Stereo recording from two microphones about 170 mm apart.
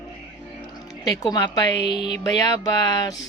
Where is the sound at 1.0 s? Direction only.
25° left (ahead or behind).